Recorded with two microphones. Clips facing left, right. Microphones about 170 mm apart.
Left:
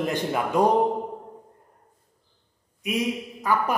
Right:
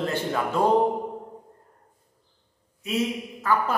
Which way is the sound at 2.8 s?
15° left (ahead or behind).